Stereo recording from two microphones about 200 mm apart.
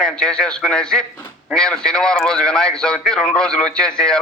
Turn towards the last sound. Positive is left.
turn(degrees=5)  # may be behind; listen again after turning